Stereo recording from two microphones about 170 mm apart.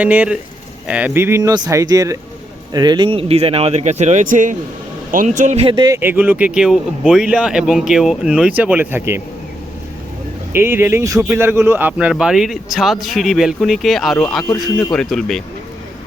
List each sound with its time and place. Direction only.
0.0 s speech: 10° right (ahead or behind); by 6.0 s 25° right (ahead or behind)
6.0 s a man's voice: 10° right (ahead or behind)
10.5 s a man's voice: 15° right (ahead or behind)
14.4 s speech: 15° left (ahead or behind)
14.9 s a man's voice: 5° left (ahead or behind)